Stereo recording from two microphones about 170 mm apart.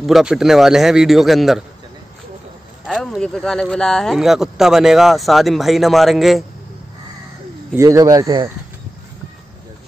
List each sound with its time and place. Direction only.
0.0 s speech: centre (ahead or behind)
2.9 s speech: centre (ahead or behind)
7.7 s speech: 20° right (ahead or behind)